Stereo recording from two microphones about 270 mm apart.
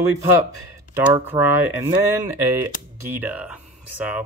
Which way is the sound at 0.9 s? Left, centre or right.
Centre.